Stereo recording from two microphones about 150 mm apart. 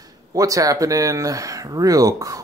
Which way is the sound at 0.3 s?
20° right (ahead or behind).